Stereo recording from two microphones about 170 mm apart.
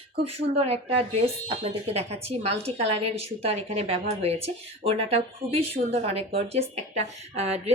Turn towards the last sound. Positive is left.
turn(degrees=-40)  # may be behind; listen again after turning